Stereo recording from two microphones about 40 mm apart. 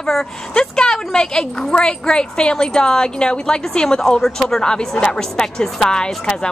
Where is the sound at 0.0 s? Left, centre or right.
Centre.